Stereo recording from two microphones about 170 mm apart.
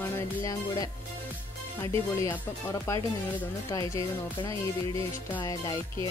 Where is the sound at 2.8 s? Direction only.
15° left (ahead or behind).